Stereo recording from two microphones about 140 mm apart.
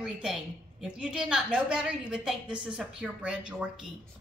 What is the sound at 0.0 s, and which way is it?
A woman's voice, 5° right (ahead or behind).